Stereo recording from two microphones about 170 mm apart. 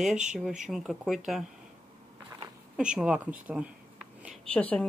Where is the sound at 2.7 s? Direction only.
5° right (ahead or behind).